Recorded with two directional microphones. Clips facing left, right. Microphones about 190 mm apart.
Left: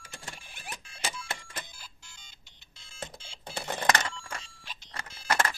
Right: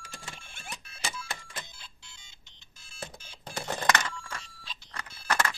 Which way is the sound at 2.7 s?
90° left.